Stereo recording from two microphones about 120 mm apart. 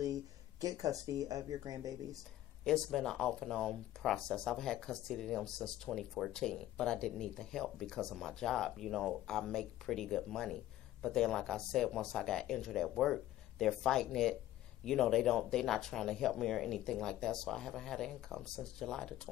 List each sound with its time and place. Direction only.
0.0 s speech: 30° right (ahead or behind)
2.6 s speech: 5° left (ahead or behind)